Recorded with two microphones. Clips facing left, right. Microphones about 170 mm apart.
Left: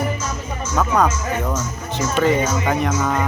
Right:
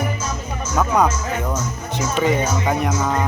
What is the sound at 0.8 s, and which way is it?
Speech, 10° right (ahead or behind).